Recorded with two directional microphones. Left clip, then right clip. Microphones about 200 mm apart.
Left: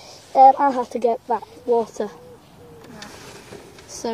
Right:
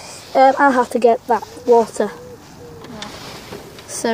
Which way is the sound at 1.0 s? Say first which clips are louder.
Right 6 dB; 35° right (ahead or behind).